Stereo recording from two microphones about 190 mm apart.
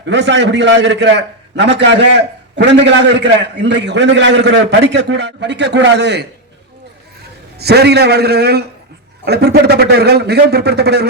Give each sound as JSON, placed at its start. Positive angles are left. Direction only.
{"t": 0.0, "sound": "a man's voice", "side_deg": -70}
{"t": 7.6, "sound": "a man's voice", "side_deg": -60}